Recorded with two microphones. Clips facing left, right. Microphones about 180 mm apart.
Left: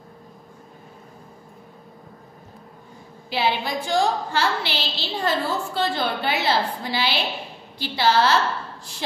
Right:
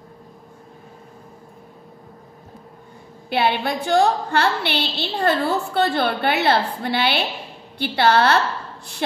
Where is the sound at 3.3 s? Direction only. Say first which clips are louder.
Right 3 dB; 60° right (ahead or behind).